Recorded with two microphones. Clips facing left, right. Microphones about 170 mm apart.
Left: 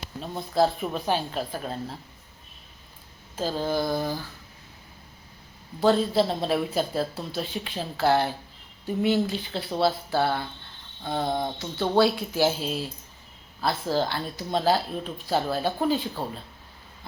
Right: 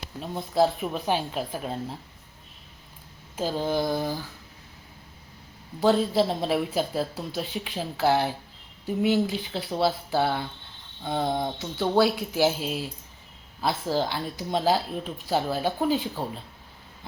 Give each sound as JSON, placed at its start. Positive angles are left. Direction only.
{"t": 0.2, "sound": "speech", "side_deg": -10}
{"t": 3.3, "sound": "speech", "side_deg": -15}
{"t": 5.8, "sound": "speech", "side_deg": -10}
{"t": 11.0, "sound": "a sound", "side_deg": 0}
{"t": 11.6, "sound": "speech", "side_deg": -10}